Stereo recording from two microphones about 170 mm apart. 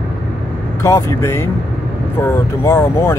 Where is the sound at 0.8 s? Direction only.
15° left (ahead or behind).